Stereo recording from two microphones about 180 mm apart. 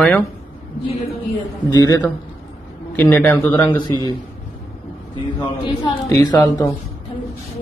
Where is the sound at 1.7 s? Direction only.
20° left (ahead or behind).